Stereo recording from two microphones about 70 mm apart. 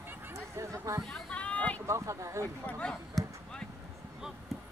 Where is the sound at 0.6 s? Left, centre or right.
Right.